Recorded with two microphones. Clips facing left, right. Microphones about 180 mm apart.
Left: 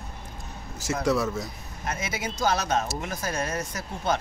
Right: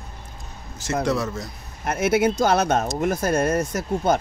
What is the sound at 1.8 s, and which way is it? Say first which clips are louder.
Speech: right 12 dB; 60° right (ahead or behind).